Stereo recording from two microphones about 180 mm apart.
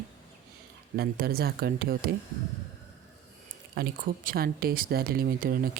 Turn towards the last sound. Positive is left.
turn(degrees=-55)  # may be behind; listen again after turning